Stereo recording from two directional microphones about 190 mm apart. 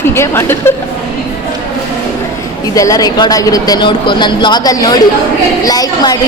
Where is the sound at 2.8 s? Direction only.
20° left (ahead or behind).